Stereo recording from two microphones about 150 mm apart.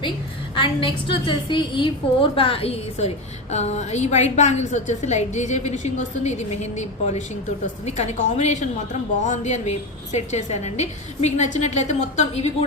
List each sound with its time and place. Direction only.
0.5 s a woman's voice: 35° left (ahead or behind)